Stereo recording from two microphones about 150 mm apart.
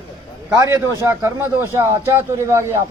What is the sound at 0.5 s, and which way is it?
A man's voice, 25° right (ahead or behind).